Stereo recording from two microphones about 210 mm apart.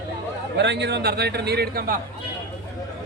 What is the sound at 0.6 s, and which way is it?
A man's voice, 55° right (ahead or behind).